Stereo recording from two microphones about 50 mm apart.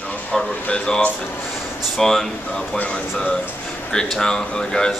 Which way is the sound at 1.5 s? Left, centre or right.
Centre.